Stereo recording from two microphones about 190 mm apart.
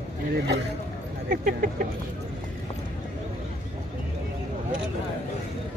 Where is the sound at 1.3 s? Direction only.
45° right (ahead or behind).